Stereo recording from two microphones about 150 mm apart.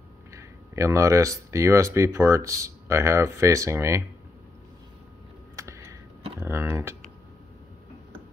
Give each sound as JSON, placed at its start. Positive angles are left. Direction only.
{"t": 0.3, "sound": "speech", "side_deg": -20}
{"t": 5.6, "sound": "a sound", "side_deg": -20}
{"t": 6.4, "sound": "speech", "side_deg": -15}